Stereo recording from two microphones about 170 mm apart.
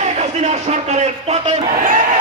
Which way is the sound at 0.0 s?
40° right (ahead or behind).